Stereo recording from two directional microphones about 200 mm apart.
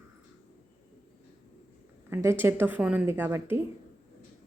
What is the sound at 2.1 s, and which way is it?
A woman's voice, 10° right (ahead or behind).